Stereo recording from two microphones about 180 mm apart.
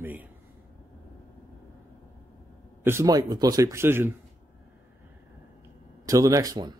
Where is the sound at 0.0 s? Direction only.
10° right (ahead or behind).